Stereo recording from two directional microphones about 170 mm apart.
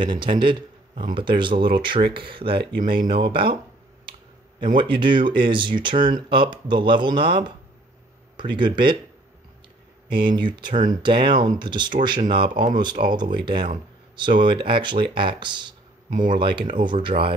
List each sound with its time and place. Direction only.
0.0 s speech: 30° right (ahead or behind)
4.7 s speech: 30° right (ahead or behind)
10.0 s speech: 30° right (ahead or behind)
10.7 s speech: 50° right (ahead or behind)
11.0 s speech: 30° right (ahead or behind)
16.1 s speech: 50° right (ahead or behind)
16.3 s speech: 30° right (ahead or behind)